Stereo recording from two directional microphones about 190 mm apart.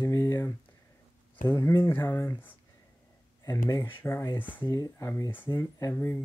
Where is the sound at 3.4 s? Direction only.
15° left (ahead or behind).